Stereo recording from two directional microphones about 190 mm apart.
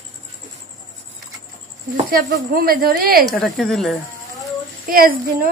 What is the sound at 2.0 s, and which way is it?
Speech, 50° right (ahead or behind).